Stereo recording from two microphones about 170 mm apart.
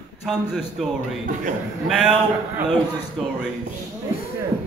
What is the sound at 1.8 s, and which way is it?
Speech, 5° right (ahead or behind).